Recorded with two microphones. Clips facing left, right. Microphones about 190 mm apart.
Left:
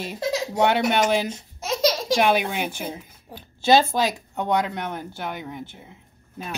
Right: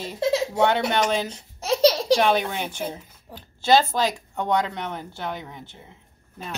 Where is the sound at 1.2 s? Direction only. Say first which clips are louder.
Right 3 dB; 35° right (ahead or behind).